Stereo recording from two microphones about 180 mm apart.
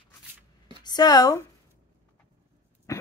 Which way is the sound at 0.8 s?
20° left (ahead or behind).